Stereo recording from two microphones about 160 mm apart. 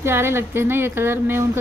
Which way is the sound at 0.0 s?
15° right (ahead or behind).